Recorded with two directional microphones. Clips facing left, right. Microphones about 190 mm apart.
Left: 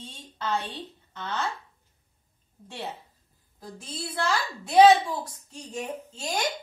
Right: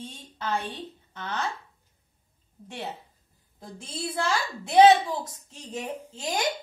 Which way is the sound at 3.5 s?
25° right (ahead or behind).